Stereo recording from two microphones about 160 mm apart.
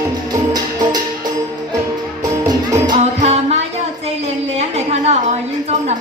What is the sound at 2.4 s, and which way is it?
Music, 25° right (ahead or behind).